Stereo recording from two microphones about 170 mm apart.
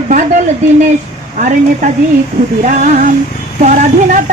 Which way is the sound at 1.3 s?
45° right (ahead or behind).